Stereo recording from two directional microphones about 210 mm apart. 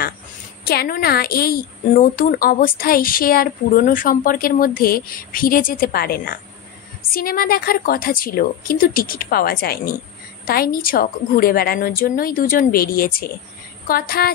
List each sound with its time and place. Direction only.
0.7 s a woman's voice: 45° left (ahead or behind)